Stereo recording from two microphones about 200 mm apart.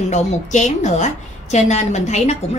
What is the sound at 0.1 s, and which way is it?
A woman's voice, 35° left (ahead or behind).